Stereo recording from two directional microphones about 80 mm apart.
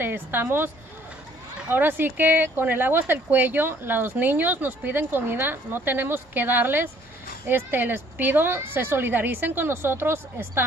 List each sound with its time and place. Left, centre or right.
0.0 s a woman's voice: right
1.7 s speech: right